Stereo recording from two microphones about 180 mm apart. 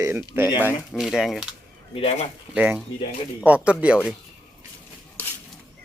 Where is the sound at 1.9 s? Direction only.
35° left (ahead or behind).